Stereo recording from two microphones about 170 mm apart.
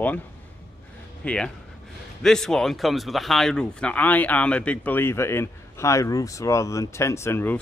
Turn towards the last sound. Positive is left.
turn(degrees=15)  # may be behind; listen again after turning